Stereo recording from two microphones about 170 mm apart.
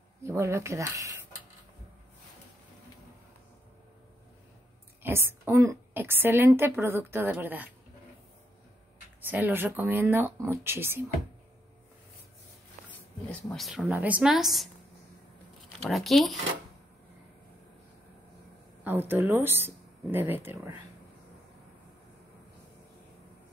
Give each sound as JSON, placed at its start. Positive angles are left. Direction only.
{"t": 0.2, "sound": "a woman's voice", "side_deg": -15}
{"t": 5.0, "sound": "a woman's voice", "side_deg": -15}
{"t": 9.2, "sound": "a woman's voice", "side_deg": -10}
{"t": 13.5, "sound": "speech", "side_deg": 0}
{"t": 15.8, "sound": "speech", "side_deg": 0}
{"t": 18.9, "sound": "a woman's voice", "side_deg": -10}